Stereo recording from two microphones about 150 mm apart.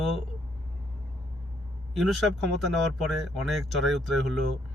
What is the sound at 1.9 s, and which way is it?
Speech, centre (ahead or behind).